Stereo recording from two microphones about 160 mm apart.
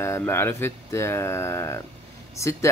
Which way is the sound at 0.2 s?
15° left (ahead or behind).